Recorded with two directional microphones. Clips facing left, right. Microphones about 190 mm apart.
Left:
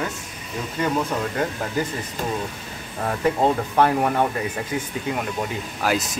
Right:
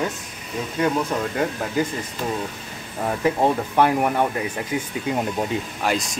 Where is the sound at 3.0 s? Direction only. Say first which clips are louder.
Even; 10° right (ahead or behind).